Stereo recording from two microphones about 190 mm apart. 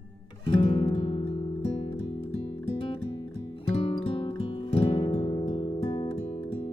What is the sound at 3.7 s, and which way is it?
Music, 25° left (ahead or behind).